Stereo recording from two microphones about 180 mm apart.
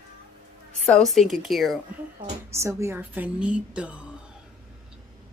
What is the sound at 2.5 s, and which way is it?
A woman's voice, 15° right (ahead or behind).